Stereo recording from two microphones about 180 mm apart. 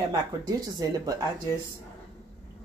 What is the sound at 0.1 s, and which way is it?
Speech, 20° right (ahead or behind).